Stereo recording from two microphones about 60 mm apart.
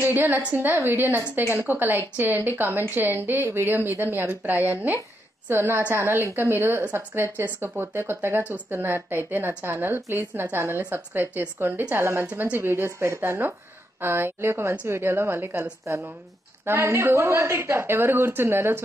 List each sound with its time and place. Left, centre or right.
0.0 s a woman's voice: right
15.8 s a woman's voice: right
16.6 s a woman's voice: right